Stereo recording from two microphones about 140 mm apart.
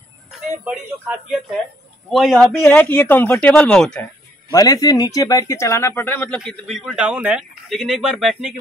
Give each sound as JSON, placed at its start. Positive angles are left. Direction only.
{"t": 0.7, "sound": "speech", "side_deg": -10}
{"t": 2.1, "sound": "a man's voice", "side_deg": 0}
{"t": 2.6, "sound": "a woman's voice", "side_deg": 10}
{"t": 4.5, "sound": "a man's voice", "side_deg": 25}
{"t": 6.4, "sound": "a man's voice", "side_deg": 0}